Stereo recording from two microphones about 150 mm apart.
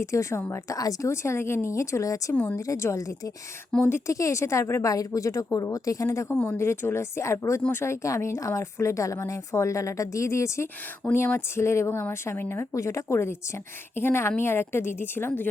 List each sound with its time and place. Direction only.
0.0 s a woman's voice: 20° left (ahead or behind)